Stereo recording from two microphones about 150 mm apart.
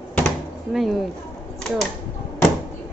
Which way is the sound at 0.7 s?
Centre (ahead or behind).